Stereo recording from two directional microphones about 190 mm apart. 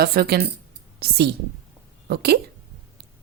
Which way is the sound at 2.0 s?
55° right (ahead or behind).